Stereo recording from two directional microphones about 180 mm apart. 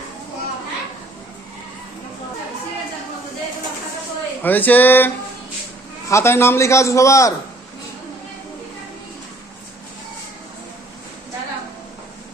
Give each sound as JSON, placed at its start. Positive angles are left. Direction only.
{"t": 4.4, "sound": "a man's voice", "side_deg": 10}